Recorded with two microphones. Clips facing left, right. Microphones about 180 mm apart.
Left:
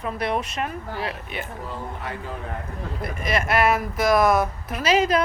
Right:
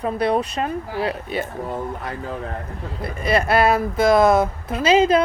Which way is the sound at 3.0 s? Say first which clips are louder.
Right 5 dB; 35° right (ahead or behind).